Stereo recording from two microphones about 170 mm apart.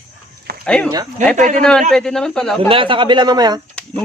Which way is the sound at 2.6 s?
30° right (ahead or behind).